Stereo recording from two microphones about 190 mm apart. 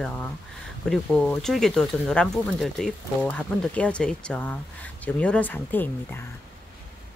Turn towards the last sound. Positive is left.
turn(degrees=10)  # may be behind; listen again after turning